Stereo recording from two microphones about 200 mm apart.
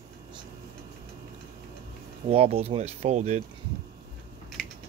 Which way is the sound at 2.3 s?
30° right (ahead or behind).